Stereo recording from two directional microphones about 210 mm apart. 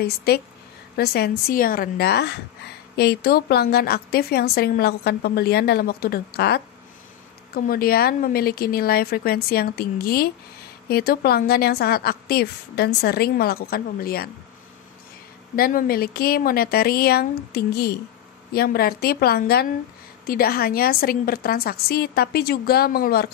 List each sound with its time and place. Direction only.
0.0 s a woman's voice: 50° left (ahead or behind)
15.5 s a woman's voice: 45° left (ahead or behind)